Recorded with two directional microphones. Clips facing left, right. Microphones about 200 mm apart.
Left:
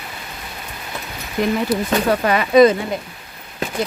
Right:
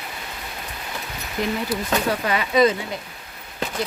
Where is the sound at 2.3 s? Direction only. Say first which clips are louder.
Left 7 dB; 50° left (ahead or behind).